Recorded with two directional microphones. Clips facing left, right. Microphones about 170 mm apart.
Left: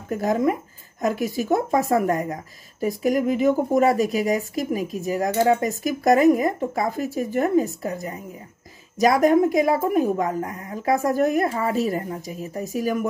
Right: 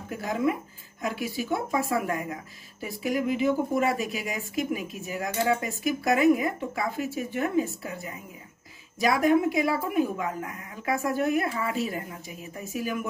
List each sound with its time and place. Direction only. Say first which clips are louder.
0.1 s speech: left 6 dB; 45° left (ahead or behind)